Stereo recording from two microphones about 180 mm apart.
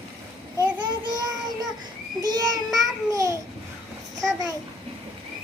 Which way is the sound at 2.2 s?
20° right (ahead or behind).